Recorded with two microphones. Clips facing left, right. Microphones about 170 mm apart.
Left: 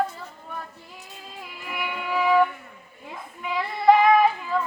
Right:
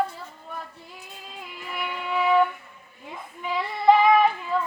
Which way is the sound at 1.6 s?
Centre (ahead or behind).